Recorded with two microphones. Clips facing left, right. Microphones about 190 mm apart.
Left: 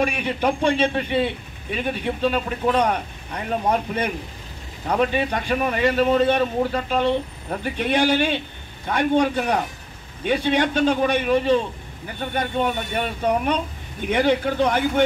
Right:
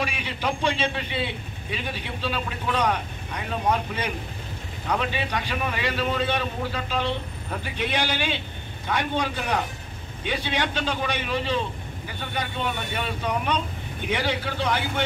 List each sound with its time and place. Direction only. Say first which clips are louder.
0.0 s a man's voice: left 7 dB; 55° left (ahead or behind)
4.9 s a man's voice: left 6 dB; 50° left (ahead or behind)